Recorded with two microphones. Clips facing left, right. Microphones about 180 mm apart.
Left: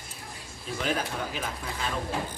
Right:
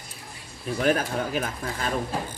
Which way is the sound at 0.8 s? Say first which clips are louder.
Right 6 dB; 50° right (ahead or behind).